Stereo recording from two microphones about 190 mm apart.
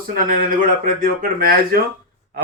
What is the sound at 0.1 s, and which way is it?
A man's voice, 50° right (ahead or behind).